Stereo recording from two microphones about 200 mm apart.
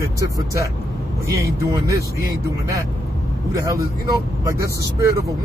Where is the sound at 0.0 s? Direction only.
15° right (ahead or behind).